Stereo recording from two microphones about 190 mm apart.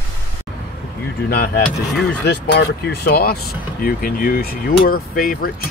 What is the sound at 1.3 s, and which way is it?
Speech, 60° left (ahead or behind).